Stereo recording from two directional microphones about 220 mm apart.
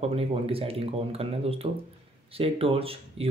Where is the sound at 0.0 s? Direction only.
25° right (ahead or behind).